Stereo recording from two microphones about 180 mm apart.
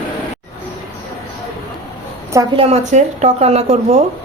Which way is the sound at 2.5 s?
35° right (ahead or behind).